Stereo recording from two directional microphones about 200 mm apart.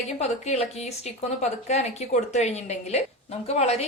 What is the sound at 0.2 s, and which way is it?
Speech, 35° left (ahead or behind).